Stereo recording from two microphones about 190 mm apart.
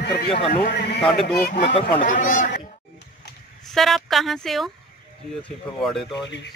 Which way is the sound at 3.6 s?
Centre (ahead or behind).